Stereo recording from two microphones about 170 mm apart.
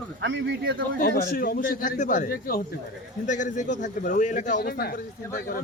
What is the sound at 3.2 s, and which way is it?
Speech, 45° left (ahead or behind).